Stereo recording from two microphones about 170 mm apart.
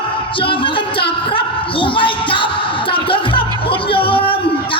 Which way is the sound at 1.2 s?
30° left (ahead or behind).